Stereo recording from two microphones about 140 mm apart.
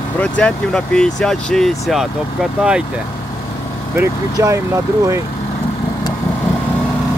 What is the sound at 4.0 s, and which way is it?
Speech, 20° right (ahead or behind).